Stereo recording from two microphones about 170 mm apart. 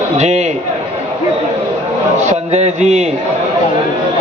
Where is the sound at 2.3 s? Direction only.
40° right (ahead or behind).